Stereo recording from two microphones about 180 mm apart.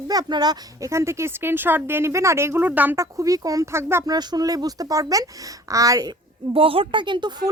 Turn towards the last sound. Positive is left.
turn(degrees=-25)  # may be behind; listen again after turning